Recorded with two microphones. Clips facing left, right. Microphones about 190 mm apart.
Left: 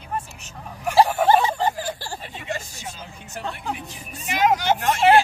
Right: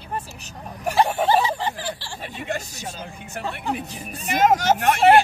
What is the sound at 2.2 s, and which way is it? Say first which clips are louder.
Speech: right 4 dB; 55° right (ahead or behind).